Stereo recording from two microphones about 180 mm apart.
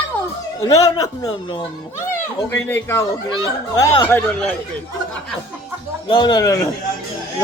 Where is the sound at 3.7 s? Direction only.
25° left (ahead or behind).